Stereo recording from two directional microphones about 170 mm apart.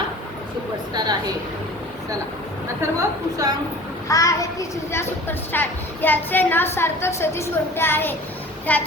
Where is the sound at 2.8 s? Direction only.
20° right (ahead or behind).